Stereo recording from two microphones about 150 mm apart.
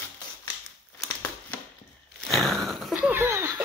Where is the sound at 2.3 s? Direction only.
Centre (ahead or behind); by 3.5 s 15° right (ahead or behind).